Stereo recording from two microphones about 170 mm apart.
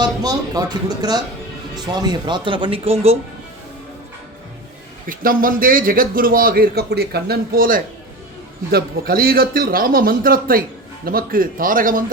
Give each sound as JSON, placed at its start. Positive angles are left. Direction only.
{"t": 0.0, "sound": "speech", "side_deg": -25}
{"t": 5.0, "sound": "a man's voice", "side_deg": -55}